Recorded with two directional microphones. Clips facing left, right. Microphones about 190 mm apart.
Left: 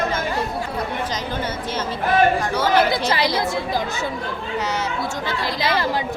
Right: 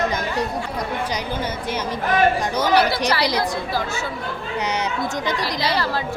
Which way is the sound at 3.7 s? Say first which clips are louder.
Left 1 dB; 20° left (ahead or behind).